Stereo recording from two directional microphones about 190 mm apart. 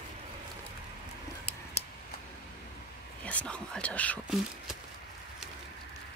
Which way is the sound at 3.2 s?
5° left (ahead or behind).